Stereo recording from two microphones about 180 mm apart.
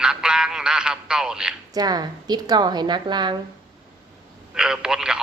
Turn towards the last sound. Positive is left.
turn(degrees=-5)  # may be behind; listen again after turning